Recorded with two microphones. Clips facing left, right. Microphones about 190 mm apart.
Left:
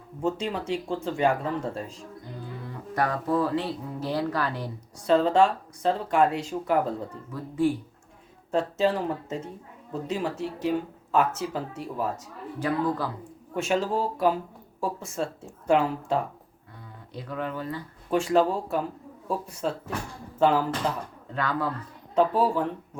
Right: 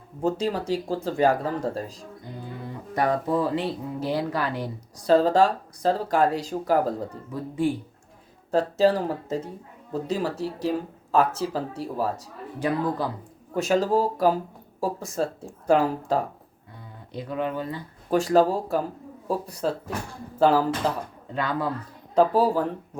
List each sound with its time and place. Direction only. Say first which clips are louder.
0.2 s speech: right 3 dB; 35° right (ahead or behind)
2.9 s speech: right 2 dB; 15° right (ahead or behind)
4.9 s speech: right 2 dB; 35° right (ahead or behind)
8.4 s speech: right 4 dB; 35° right (ahead or behind)
12.5 s speech: right 1 dB; 15° right (ahead or behind)
13.5 s speech: right 4 dB; 40° right (ahead or behind)
17.2 s speech: right 4 dB; 20° right (ahead or behind)
18.1 s speech: right 3 dB; 40° right (ahead or behind)
21.3 s speech: right 1 dB; 15° right (ahead or behind)
22.1 s speech: right 3 dB; 35° right (ahead or behind)